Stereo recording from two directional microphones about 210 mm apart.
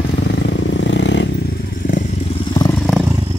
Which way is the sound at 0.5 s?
60° left (ahead or behind).